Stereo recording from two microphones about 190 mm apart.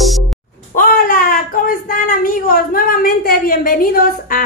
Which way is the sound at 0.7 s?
50° left (ahead or behind).